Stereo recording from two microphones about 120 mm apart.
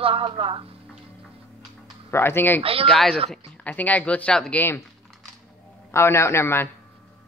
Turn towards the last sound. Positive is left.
turn(degrees=20)  # may be behind; listen again after turning